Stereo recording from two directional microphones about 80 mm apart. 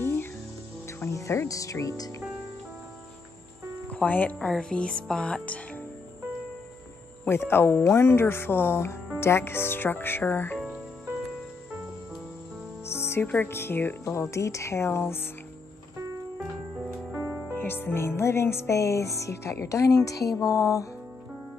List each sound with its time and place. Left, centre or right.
0.0 s music: left
0.8 s speech: left
3.9 s speech: centre
4.5 s speech: centre
7.2 s speech: left
7.8 s music: left
9.2 s speech: left
12.8 s music: left
13.5 s speech: left
14.0 s music: left
17.1 s music: centre
17.5 s music: left